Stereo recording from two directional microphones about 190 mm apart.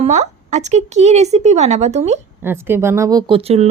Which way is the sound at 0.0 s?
35° right (ahead or behind).